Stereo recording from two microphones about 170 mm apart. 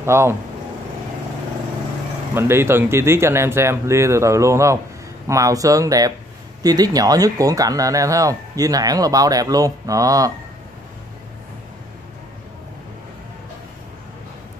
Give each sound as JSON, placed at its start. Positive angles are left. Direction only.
{"t": 0.0, "sound": "speech", "side_deg": -15}
{"t": 2.3, "sound": "speech", "side_deg": -15}